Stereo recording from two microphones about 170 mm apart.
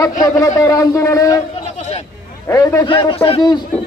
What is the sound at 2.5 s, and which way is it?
Speech, 15° left (ahead or behind).